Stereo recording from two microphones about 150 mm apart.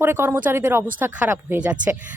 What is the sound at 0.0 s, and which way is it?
A woman's voice, 15° right (ahead or behind).